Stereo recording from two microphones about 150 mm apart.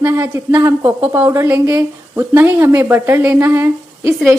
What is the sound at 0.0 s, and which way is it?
A woman's voice, 20° right (ahead or behind).